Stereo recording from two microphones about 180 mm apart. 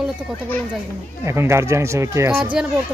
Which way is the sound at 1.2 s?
15° right (ahead or behind).